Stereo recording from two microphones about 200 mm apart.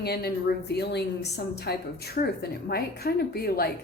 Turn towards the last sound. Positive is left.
turn(degrees=50)  # may be behind; listen again after turning